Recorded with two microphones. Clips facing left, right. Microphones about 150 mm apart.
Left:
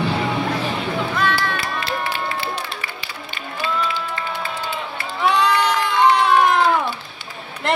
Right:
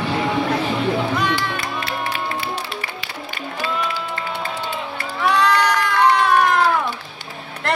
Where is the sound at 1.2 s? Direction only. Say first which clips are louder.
Left 1 dB; 15° right (ahead or behind).